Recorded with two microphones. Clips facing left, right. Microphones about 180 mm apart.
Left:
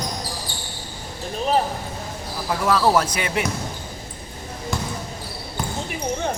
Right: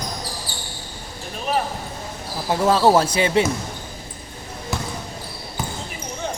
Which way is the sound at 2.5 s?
30° right (ahead or behind).